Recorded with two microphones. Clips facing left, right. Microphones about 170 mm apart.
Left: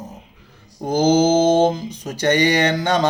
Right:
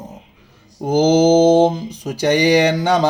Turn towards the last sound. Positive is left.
turn(degrees=-10)  # may be behind; listen again after turning